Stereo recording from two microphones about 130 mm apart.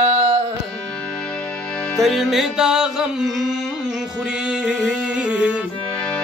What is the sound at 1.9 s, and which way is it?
Music, centre (ahead or behind).